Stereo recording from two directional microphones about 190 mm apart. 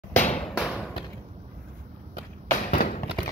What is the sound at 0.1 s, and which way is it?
Bouncing, 35° left (ahead or behind).